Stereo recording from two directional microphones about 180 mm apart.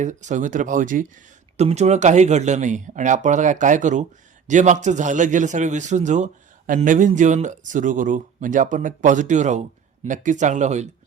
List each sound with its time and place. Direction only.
0.0 s a man's voice: 40° right (ahead or behind)